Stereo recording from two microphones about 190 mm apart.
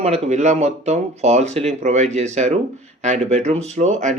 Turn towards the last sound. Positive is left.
turn(degrees=-40)  # may be behind; listen again after turning